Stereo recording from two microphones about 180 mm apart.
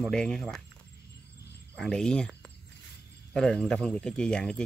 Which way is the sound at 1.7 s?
5° left (ahead or behind).